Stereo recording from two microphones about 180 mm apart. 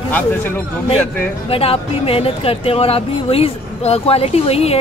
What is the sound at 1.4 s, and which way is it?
Speech, 30° left (ahead or behind).